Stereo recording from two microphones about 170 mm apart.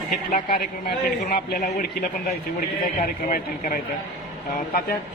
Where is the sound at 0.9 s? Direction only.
70° left (ahead or behind).